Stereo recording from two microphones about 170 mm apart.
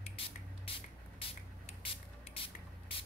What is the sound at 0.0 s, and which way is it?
Music, 35° left (ahead or behind).